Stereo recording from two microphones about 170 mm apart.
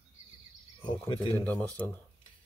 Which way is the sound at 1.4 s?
10° left (ahead or behind).